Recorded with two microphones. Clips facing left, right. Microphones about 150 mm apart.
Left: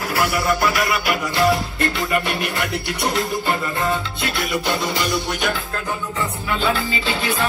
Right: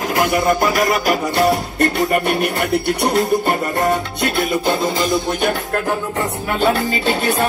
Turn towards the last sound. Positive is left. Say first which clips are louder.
# right 5 dB
turn(degrees=-45)  # may be behind; listen again after turning